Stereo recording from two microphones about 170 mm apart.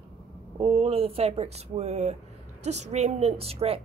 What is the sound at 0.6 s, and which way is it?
Speech, 35° right (ahead or behind).